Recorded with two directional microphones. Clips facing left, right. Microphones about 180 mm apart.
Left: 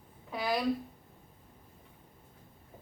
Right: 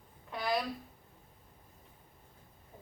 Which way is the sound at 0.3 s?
5° left (ahead or behind).